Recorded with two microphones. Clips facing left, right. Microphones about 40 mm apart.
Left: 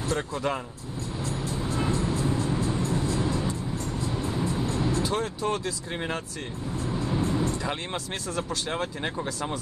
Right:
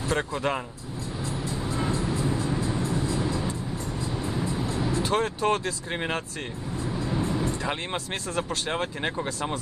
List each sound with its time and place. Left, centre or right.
0.1 s speech: right
1.9 s music: right
4.6 s music: centre
5.0 s speech: right
7.2 s speech: right